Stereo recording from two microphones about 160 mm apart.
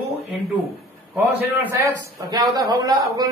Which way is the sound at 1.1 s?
15° right (ahead or behind).